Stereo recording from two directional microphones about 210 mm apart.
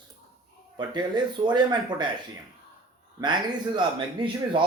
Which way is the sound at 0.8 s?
20° right (ahead or behind).